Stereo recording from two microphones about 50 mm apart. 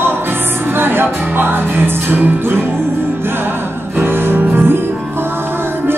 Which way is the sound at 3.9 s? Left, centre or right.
Right.